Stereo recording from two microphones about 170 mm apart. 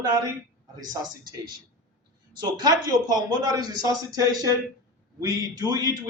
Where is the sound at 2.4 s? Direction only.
25° right (ahead or behind).